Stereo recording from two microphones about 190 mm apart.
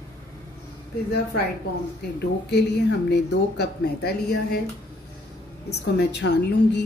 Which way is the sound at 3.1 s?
60° left (ahead or behind).